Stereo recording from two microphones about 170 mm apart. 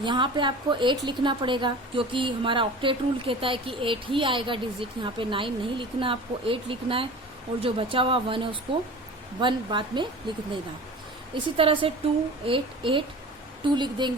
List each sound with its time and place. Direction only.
0.0 s a woman's voice: 30° right (ahead or behind)
11.5 s a woman's voice: 30° right (ahead or behind)